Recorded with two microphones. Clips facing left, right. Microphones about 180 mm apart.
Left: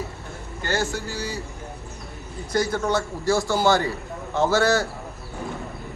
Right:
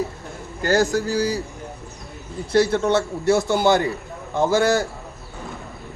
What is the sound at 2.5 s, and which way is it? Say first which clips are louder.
A man's voice: right 5 dB; 25° right (ahead or behind).